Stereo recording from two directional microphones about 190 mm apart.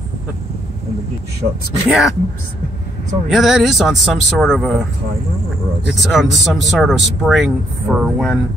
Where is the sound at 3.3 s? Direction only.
Centre (ahead or behind).